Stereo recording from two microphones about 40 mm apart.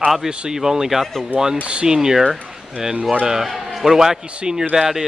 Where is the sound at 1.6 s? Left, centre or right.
Right.